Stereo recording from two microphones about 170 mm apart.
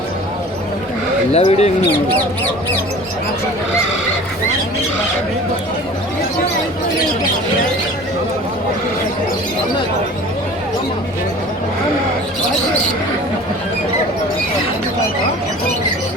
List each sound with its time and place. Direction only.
1.3 s speech: 40° left (ahead or behind)